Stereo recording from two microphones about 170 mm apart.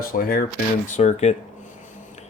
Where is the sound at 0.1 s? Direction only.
55° left (ahead or behind).